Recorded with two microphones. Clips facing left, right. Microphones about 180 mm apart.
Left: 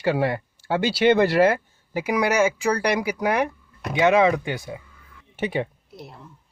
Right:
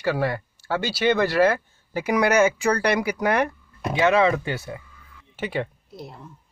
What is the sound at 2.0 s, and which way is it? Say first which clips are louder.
Speech: right 2 dB; 10° left (ahead or behind).